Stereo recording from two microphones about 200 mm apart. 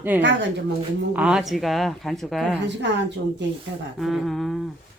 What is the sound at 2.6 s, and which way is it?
Speech, 60° right (ahead or behind).